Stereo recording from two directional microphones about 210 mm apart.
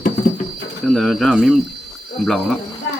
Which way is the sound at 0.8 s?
Centre (ahead or behind).